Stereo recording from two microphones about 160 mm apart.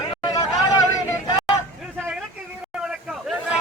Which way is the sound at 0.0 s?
30° left (ahead or behind).